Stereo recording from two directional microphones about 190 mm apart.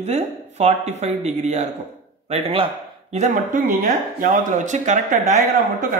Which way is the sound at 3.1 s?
40° right (ahead or behind).